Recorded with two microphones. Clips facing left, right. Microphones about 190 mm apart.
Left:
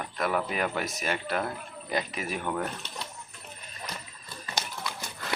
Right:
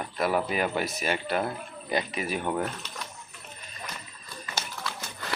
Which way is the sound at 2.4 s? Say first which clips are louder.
Right 2 dB; 20° right (ahead or behind).